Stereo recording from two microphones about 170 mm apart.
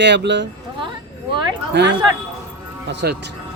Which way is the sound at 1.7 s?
80° right.